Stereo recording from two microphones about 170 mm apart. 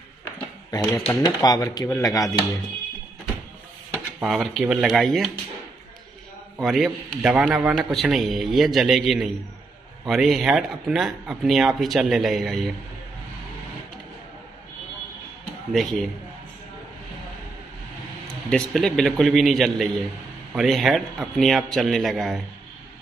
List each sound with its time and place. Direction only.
1.0 s speech: 25° left (ahead or behind)
3.9 s speech: 5° right (ahead or behind)
6.6 s a man's voice: centre (ahead or behind)
15.7 s a man's voice: centre (ahead or behind)
18.2 s a man's voice: centre (ahead or behind)